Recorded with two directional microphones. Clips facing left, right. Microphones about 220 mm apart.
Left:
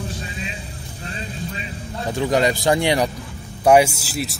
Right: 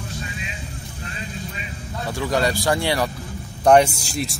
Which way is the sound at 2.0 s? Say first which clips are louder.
Left 3 dB; 20° left (ahead or behind).